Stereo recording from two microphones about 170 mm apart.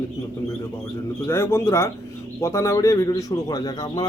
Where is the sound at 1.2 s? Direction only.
15° left (ahead or behind).